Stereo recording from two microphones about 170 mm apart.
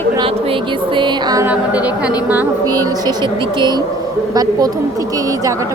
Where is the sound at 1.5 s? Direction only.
10° right (ahead or behind).